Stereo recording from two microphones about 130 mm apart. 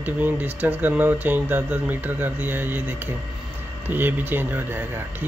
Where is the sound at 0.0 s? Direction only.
15° right (ahead or behind).